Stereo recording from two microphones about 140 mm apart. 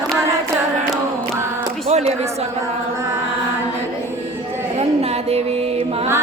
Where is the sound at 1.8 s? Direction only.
50° right (ahead or behind).